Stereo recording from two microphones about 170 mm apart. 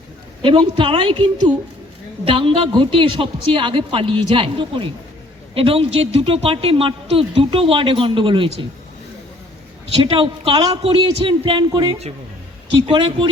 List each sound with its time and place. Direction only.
0.4 s a woman's voice: 30° right (ahead or behind)
10.0 s a woman's voice: 30° right (ahead or behind)